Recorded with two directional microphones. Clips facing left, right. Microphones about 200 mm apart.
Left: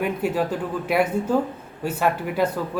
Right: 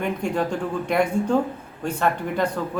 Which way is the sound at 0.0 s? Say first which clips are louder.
Left 1 dB; 5° left (ahead or behind).